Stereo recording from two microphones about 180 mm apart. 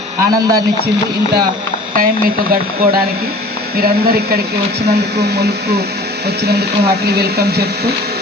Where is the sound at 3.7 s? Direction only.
60° right (ahead or behind).